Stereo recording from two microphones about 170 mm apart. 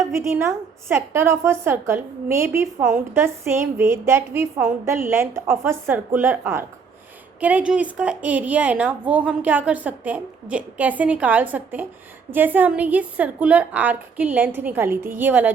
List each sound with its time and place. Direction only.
0.1 s a woman's voice: 15° right (ahead or behind)